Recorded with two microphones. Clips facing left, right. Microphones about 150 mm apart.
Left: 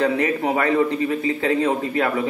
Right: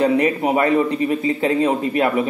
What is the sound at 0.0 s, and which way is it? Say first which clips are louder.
A man's voice: right 3 dB; 15° right (ahead or behind).